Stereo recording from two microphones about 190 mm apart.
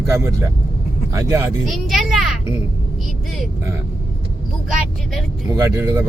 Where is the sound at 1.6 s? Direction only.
Centre (ahead or behind).